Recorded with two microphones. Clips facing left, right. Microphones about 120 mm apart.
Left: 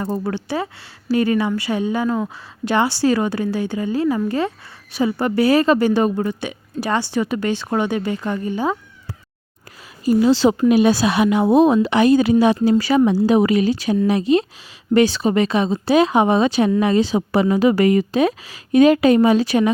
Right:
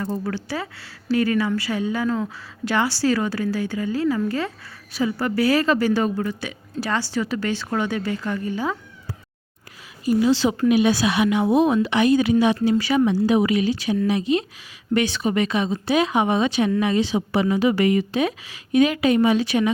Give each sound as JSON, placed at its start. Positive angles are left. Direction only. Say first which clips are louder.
{"t": 0.0, "sound": "speech", "louder": "left 3 dB", "side_deg": 35}
{"t": 0.3, "sound": "a woman's voice", "louder": "left 5 dB", "side_deg": 20}
{"t": 10.0, "sound": "speech", "louder": "left 4 dB", "side_deg": 40}